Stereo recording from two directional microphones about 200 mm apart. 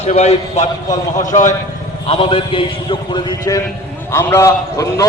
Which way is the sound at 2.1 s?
25° left (ahead or behind).